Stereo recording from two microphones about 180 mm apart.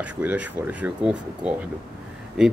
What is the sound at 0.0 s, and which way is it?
Speech, 10° right (ahead or behind).